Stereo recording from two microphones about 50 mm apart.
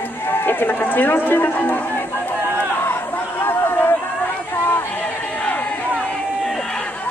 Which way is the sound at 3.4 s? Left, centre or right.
Left.